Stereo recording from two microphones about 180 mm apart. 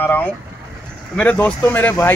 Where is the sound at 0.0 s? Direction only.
10° left (ahead or behind).